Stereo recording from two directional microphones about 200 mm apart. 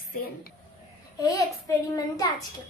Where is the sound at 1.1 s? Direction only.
15° left (ahead or behind).